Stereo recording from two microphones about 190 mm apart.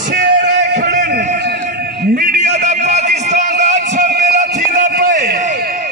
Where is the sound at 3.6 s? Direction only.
40° right (ahead or behind).